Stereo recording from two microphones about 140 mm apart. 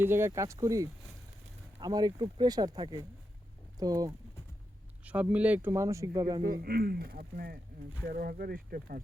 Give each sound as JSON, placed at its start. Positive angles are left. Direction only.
{"t": 0.0, "sound": "speech", "side_deg": -15}
{"t": 5.0, "sound": "speech", "side_deg": -10}
{"t": 6.4, "sound": "speech", "side_deg": -90}